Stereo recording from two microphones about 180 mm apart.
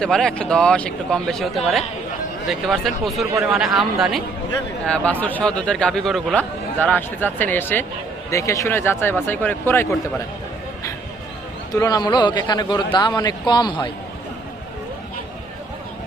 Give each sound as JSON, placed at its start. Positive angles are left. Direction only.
{"t": 0.0, "sound": "speech", "side_deg": 5}
{"t": 5.2, "sound": "a man's voice", "side_deg": 5}
{"t": 11.7, "sound": "speech", "side_deg": 20}